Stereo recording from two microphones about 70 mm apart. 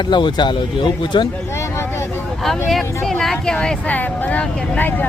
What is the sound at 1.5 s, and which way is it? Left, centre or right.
Vehicle, left.